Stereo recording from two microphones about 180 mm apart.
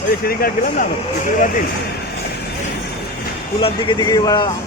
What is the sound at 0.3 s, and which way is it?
Speech, 55° left (ahead or behind).